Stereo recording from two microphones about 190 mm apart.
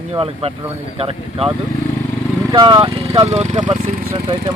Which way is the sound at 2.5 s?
25° right (ahead or behind).